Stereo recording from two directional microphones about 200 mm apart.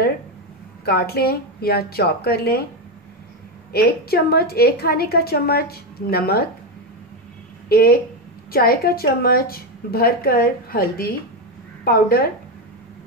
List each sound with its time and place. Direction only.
0.8 s a woman's voice: 50° left (ahead or behind)
3.7 s a woman's voice: 50° left (ahead or behind)
7.6 s a woman's voice: 50° left (ahead or behind)